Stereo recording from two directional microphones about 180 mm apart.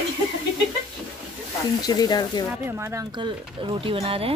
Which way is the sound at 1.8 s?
20° left (ahead or behind).